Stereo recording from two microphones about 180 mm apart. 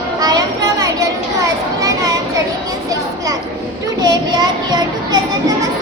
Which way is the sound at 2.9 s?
20° right (ahead or behind).